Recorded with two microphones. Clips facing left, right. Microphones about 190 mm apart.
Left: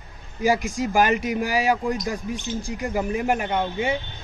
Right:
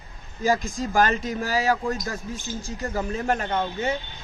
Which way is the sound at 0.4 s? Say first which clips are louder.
Left 2 dB; 10° left (ahead or behind).